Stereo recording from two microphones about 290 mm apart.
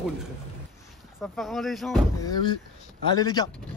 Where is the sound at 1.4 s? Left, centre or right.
Centre.